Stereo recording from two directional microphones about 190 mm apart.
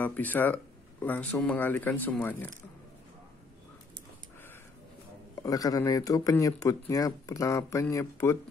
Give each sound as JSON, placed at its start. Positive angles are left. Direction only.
{"t": 0.0, "sound": "speech", "side_deg": 10}
{"t": 5.4, "sound": "speech", "side_deg": 20}